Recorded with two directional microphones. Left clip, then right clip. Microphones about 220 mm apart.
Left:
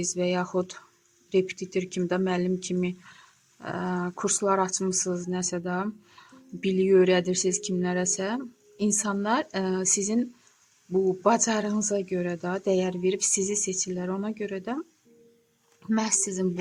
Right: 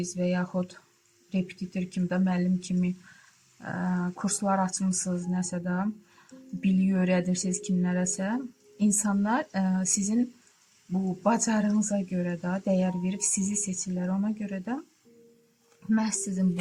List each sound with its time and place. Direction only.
0.0 s speech: 45° left (ahead or behind)
11.2 s speech: 40° left (ahead or behind)
15.9 s speech: 45° left (ahead or behind)